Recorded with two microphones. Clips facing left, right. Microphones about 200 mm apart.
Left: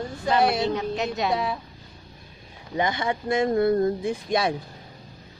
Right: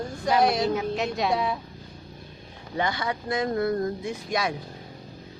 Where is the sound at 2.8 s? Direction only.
20° left (ahead or behind).